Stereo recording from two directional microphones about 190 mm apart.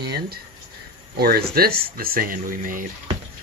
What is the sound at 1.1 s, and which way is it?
Speech, 55° right (ahead or behind).